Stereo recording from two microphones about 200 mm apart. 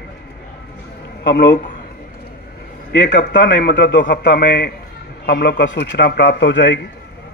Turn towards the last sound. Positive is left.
turn(degrees=65)  # may be behind; listen again after turning